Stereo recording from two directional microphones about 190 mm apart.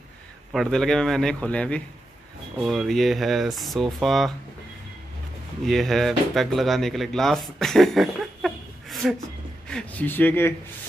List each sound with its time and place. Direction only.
0.5 s speech: centre (ahead or behind)
5.7 s speech: centre (ahead or behind)